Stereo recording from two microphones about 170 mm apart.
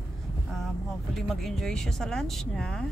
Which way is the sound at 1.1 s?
Centre (ahead or behind).